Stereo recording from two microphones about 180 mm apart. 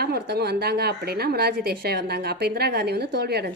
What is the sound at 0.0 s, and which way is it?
A woman's voice, 60° right (ahead or behind).